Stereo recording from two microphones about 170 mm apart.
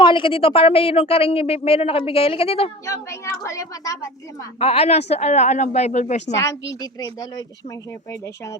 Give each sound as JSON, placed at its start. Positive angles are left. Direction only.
{"t": 0.0, "sound": "speech", "side_deg": 30}
{"t": 2.8, "sound": "speech", "side_deg": 20}
{"t": 4.6, "sound": "speech", "side_deg": 35}
{"t": 6.3, "sound": "speech", "side_deg": 20}